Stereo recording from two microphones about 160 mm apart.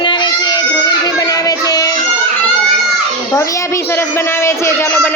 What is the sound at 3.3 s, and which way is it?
A man's voice, 20° left (ahead or behind).